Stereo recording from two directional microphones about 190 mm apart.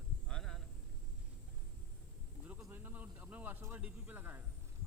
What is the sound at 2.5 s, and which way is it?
Speech, 10° right (ahead or behind).